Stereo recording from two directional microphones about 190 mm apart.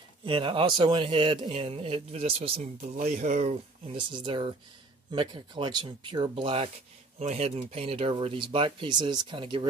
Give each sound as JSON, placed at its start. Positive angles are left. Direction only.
{"t": 0.2, "sound": "a man's voice", "side_deg": -25}
{"t": 3.0, "sound": "a man's voice", "side_deg": -45}